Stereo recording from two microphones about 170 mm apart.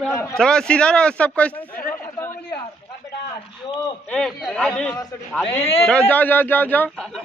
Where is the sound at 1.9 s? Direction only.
15° left (ahead or behind).